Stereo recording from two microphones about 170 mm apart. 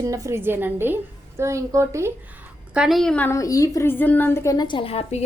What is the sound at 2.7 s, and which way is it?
A woman's voice, centre (ahead or behind).